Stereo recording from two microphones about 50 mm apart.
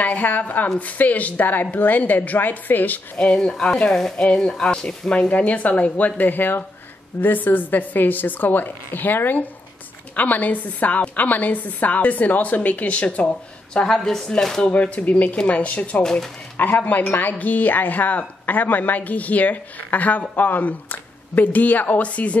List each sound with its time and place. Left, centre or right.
0.0 s speech: left
3.3 s speech: centre; by 13.3 s left
13.9 s speech: centre
14.7 s speech: left
16.0 s speech: centre
16.5 s speech: left